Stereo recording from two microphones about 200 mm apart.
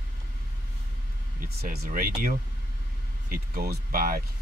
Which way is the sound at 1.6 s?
50° right (ahead or behind).